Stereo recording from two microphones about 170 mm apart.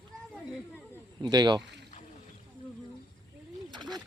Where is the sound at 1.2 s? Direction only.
25° right (ahead or behind).